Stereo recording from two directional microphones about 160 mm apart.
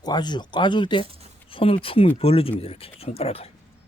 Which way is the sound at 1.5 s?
35° left (ahead or behind).